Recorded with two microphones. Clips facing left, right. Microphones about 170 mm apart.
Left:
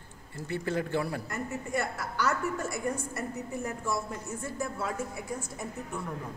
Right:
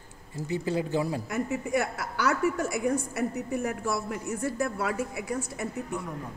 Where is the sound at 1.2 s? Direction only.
90° right.